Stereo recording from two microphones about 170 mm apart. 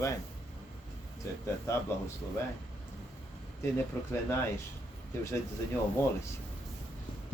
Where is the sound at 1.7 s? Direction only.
15° left (ahead or behind).